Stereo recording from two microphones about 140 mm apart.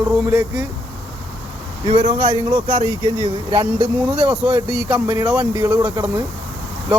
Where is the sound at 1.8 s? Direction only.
40° right (ahead or behind).